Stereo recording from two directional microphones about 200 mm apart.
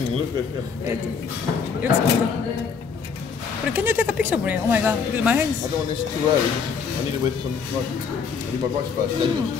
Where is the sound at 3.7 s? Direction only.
10° right (ahead or behind).